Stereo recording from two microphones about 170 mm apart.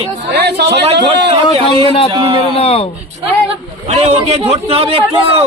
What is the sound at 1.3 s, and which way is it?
Speech, 35° right (ahead or behind).